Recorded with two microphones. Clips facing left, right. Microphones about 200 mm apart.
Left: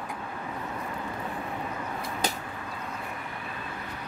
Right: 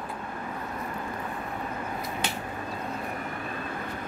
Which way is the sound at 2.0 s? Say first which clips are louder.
Left 1 dB; 40° left (ahead or behind).